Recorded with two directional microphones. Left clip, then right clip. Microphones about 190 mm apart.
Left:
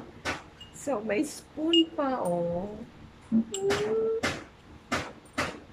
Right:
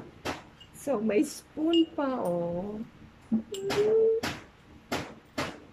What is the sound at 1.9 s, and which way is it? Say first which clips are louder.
Speech: left 1 dB; 15° right (ahead or behind).